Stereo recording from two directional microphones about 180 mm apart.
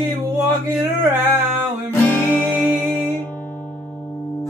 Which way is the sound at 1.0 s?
10° right (ahead or behind).